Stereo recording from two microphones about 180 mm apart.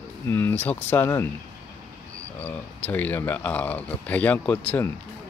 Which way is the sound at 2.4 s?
10° left (ahead or behind).